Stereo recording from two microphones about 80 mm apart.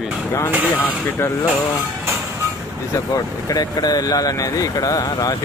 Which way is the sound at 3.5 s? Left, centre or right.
Left.